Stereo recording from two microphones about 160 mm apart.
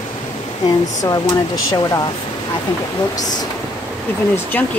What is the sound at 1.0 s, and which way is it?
Speech, 20° left (ahead or behind).